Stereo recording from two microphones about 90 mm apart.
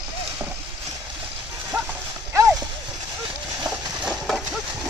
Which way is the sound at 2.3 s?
30° right (ahead or behind).